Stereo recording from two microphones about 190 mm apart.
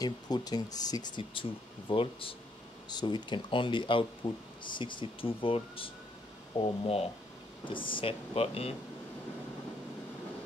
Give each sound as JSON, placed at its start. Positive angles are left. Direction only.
{"t": 0.0, "sound": "speech", "side_deg": 20}